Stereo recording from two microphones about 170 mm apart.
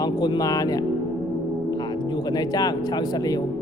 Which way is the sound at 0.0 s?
25° left (ahead or behind).